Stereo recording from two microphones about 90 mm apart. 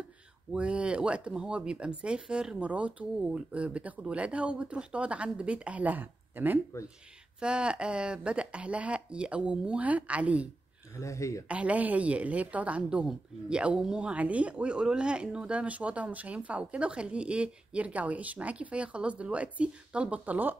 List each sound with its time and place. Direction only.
0.5 s a woman's voice: 10° right (ahead or behind)
11.0 s speech: 35° left (ahead or behind)
11.4 s a woman's voice: 15° right (ahead or behind)